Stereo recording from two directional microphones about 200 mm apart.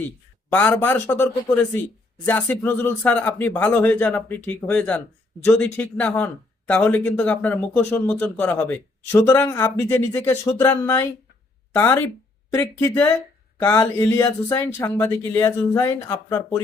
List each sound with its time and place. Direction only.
0.5 s speech: 5° left (ahead or behind)